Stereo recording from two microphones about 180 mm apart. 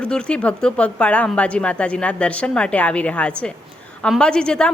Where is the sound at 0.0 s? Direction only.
5° left (ahead or behind).